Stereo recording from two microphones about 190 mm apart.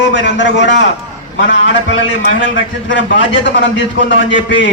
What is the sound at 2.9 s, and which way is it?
A man's voice, 70° left (ahead or behind).